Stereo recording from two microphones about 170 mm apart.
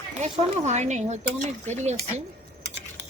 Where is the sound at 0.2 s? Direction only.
45° right (ahead or behind).